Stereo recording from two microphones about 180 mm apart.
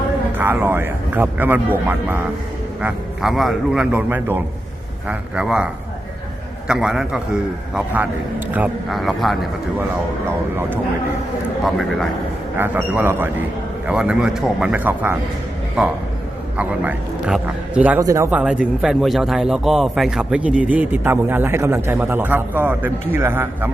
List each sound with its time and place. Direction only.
0.3 s a man's voice: 10° right (ahead or behind)
6.7 s a man's voice: 5° right (ahead or behind)
8.5 s a man's voice: 5° right (ahead or behind)
11.6 s a man's voice: centre (ahead or behind)
12.5 s a man's voice: 10° right (ahead or behind)
16.6 s a man's voice: 5° right (ahead or behind)
18.3 s a man's voice: 5° right (ahead or behind)